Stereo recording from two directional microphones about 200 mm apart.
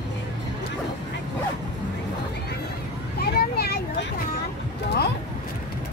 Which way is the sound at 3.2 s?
50° left (ahead or behind).